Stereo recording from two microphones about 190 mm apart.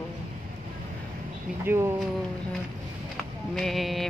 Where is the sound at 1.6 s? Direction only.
10° right (ahead or behind).